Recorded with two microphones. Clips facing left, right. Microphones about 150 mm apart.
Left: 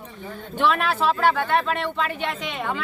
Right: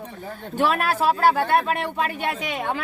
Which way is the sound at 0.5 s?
45° right (ahead or behind).